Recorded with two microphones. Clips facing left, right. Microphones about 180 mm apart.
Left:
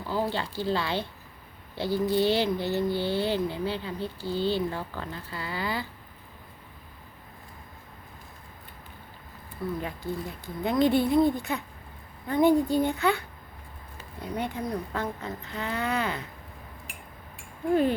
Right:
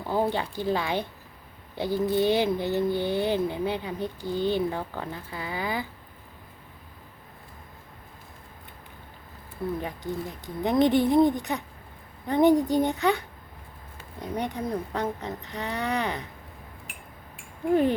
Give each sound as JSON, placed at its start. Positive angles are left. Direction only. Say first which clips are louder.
{"t": 0.0, "sound": "speech", "louder": "right 3 dB", "side_deg": -20}
{"t": 9.8, "sound": "speech", "louder": "right 1 dB", "side_deg": -15}